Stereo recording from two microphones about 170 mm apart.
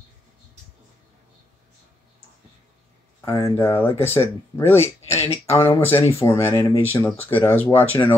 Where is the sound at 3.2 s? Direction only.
20° left (ahead or behind).